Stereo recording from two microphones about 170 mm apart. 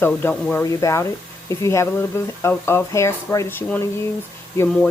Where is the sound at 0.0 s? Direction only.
10° left (ahead or behind).